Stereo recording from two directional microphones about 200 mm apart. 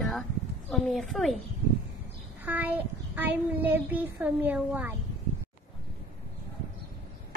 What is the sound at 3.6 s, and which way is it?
Speech, 10° right (ahead or behind).